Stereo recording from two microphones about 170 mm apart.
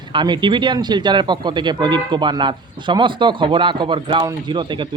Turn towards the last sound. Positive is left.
turn(degrees=-25)  # may be behind; listen again after turning